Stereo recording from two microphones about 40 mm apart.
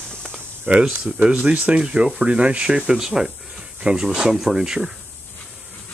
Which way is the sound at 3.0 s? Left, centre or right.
Centre.